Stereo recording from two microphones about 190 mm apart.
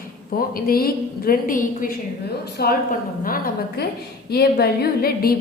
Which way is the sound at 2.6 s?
55° left (ahead or behind).